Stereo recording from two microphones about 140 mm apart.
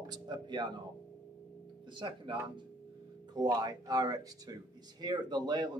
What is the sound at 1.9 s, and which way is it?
Speech, 35° right (ahead or behind).